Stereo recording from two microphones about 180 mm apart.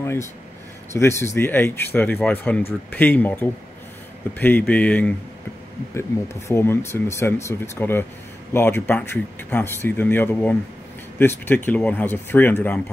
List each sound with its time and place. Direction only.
0.0 s speech: 15° left (ahead or behind)